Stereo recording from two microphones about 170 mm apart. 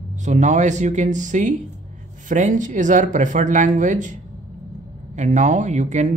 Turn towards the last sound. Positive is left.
turn(degrees=-45)  # may be behind; listen again after turning